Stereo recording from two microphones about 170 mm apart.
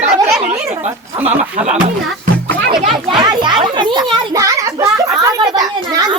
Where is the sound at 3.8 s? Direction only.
25° right (ahead or behind).